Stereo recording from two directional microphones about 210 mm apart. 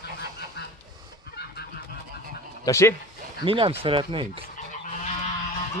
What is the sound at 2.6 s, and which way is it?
Speech, 15° left (ahead or behind).